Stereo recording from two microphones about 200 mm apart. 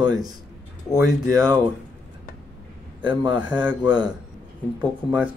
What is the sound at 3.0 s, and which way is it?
Speech, 25° right (ahead or behind).